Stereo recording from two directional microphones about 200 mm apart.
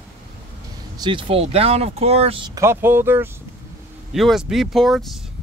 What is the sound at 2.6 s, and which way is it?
Speech, 10° right (ahead or behind).